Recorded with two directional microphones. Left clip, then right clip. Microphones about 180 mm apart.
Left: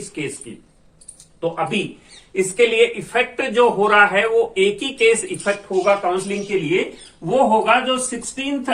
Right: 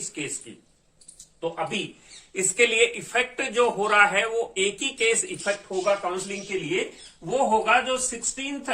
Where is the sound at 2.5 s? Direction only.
20° right (ahead or behind).